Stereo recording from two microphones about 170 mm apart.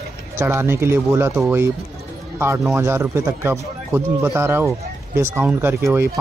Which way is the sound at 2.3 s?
15° right (ahead or behind).